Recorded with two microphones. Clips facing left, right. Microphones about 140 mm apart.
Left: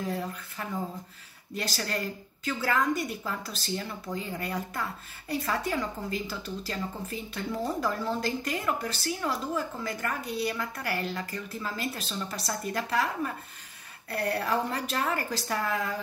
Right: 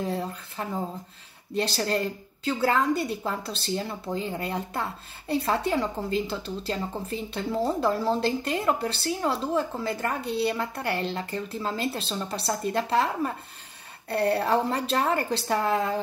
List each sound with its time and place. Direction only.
0.0 s speech: 30° right (ahead or behind)